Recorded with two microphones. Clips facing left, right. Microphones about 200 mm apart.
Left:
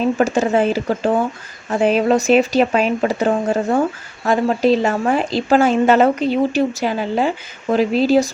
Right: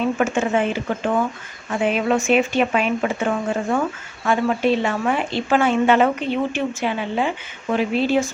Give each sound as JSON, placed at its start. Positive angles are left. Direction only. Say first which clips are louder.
{"t": 0.0, "sound": "speech", "louder": "left 4 dB", "side_deg": 35}